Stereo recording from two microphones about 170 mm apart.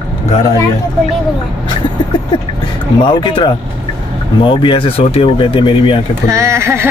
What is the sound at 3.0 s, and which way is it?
Speech, 25° left (ahead or behind).